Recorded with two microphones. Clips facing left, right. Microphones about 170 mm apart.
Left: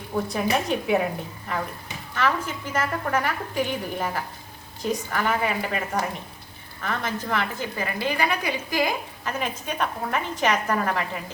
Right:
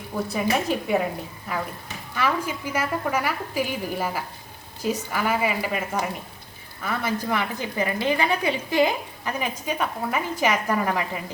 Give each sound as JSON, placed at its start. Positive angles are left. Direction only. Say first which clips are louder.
{"t": 0.3, "sound": "a woman's voice", "louder": "right 2 dB", "side_deg": 0}
{"t": 2.1, "sound": "a woman's voice", "louder": "even", "side_deg": -10}
{"t": 9.2, "sound": "a woman's voice", "louder": "right 2 dB", "side_deg": -10}